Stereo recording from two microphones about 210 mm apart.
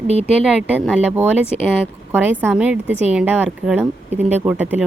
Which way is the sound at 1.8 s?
10° right (ahead or behind).